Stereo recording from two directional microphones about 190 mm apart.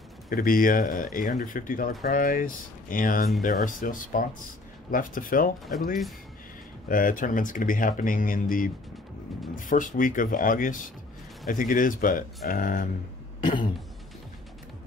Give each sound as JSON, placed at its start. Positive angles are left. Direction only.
{"t": 0.3, "sound": "speech", "side_deg": 45}
{"t": 6.9, "sound": "speech", "side_deg": 45}
{"t": 13.4, "sound": "cough", "side_deg": 25}